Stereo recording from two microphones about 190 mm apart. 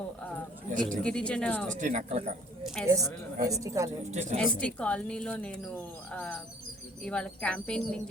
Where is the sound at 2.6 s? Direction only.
5° left (ahead or behind).